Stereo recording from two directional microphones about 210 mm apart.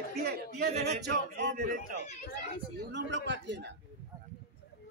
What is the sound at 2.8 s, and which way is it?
Speech, 55° right (ahead or behind).